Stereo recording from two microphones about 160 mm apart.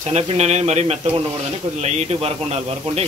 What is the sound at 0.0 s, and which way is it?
A man's voice, 40° right (ahead or behind).